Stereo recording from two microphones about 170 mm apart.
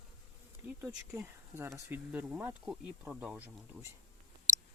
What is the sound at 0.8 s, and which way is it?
Speech, 15° right (ahead or behind).